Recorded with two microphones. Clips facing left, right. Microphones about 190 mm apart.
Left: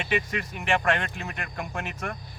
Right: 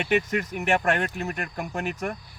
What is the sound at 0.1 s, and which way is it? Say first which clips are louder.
Speech: right 5 dB; 45° right (ahead or behind).